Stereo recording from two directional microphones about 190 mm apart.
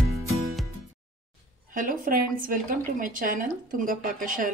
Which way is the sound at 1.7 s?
45° right (ahead or behind).